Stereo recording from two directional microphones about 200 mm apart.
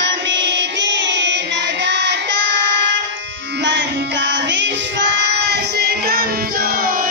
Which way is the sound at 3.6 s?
60° right (ahead or behind).